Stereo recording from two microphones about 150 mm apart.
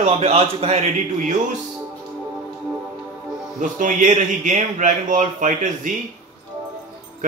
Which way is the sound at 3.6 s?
60° right (ahead or behind).